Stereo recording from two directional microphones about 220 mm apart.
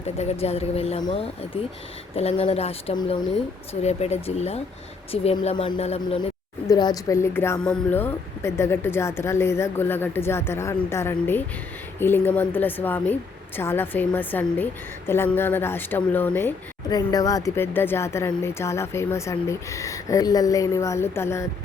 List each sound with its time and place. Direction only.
0.2 s a woman's voice: 30° left (ahead or behind); by 21.4 s 10° left (ahead or behind)